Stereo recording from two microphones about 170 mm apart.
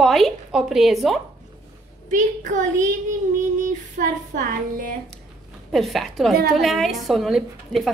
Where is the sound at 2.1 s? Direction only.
50° right (ahead or behind).